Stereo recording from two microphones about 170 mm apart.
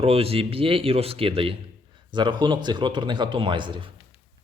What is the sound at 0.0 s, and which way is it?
A man's voice, 35° right (ahead or behind).